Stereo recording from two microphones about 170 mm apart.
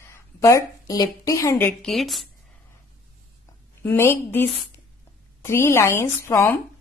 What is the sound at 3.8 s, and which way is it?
A woman's voice, 15° left (ahead or behind).